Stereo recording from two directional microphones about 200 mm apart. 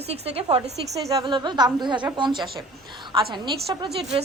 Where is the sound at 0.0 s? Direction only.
30° right (ahead or behind).